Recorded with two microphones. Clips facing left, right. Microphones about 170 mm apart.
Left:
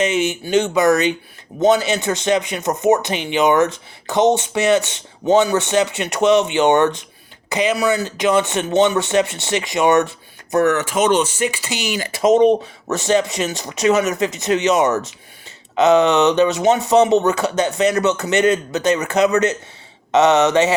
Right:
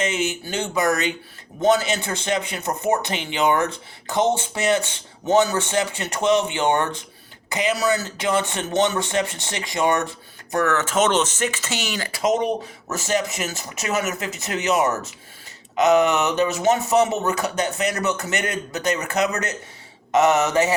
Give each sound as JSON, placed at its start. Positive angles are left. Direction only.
{"t": 0.0, "sound": "speech", "side_deg": 20}
{"t": 20.3, "sound": "mantra", "side_deg": 90}